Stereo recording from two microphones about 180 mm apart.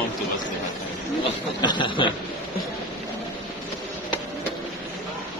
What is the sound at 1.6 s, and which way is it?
Speech, 25° left (ahead or behind).